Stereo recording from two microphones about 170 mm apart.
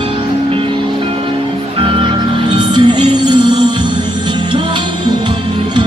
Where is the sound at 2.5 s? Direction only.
25° right (ahead or behind).